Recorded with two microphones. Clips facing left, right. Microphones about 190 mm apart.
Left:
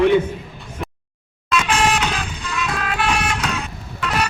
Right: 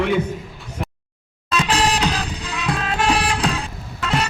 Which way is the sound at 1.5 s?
35° right (ahead or behind).